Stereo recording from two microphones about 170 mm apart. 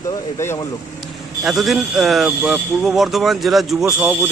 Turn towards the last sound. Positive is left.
turn(degrees=0)  # may be behind; listen again after turning